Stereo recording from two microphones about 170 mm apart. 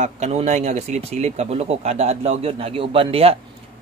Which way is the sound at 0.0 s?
40° right (ahead or behind).